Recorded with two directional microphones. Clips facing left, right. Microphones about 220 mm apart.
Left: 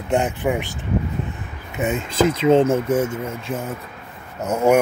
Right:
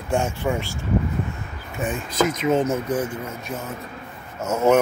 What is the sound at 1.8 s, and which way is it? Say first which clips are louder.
Speech: left 3 dB; 20° left (ahead or behind).